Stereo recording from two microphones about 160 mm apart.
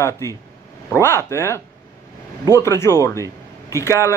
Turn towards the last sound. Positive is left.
turn(degrees=15)  # may be behind; listen again after turning